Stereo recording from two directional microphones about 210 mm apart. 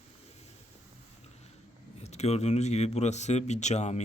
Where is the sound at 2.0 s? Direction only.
30° left (ahead or behind).